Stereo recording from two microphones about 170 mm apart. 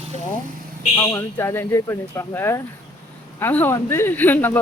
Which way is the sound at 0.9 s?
15° left (ahead or behind).